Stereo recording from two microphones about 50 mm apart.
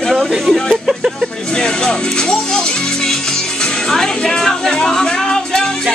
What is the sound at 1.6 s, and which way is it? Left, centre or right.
Speech, centre.